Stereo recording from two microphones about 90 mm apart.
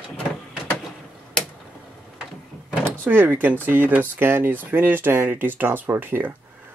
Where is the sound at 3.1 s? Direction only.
20° right (ahead or behind).